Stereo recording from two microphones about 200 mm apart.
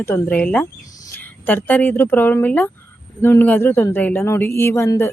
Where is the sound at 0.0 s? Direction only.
10° left (ahead or behind).